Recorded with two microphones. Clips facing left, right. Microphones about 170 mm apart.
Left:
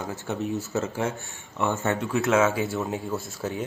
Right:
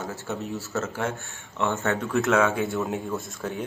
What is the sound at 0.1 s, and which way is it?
Speech, 20° left (ahead or behind).